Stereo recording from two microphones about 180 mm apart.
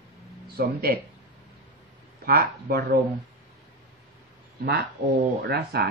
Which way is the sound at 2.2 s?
65° right (ahead or behind).